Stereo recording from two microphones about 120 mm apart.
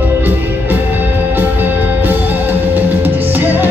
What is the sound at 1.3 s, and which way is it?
Music, 15° right (ahead or behind).